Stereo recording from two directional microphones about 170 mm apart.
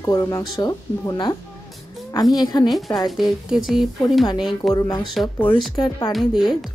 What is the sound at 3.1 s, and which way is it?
A woman's voice, centre (ahead or behind).